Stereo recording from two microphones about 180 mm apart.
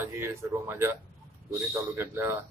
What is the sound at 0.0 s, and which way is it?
Speech, 15° right (ahead or behind).